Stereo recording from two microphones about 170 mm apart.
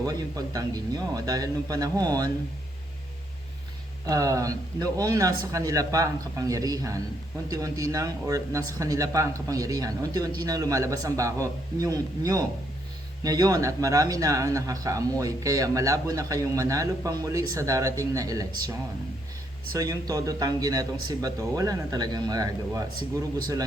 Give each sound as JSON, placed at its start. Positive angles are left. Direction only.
{"t": 0.0, "sound": "speech", "side_deg": -20}
{"t": 4.0, "sound": "speech", "side_deg": -20}
{"t": 19.7, "sound": "speech", "side_deg": -20}